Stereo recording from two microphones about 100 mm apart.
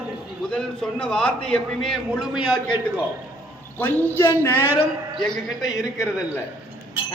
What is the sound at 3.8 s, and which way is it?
Speech, 20° left (ahead or behind).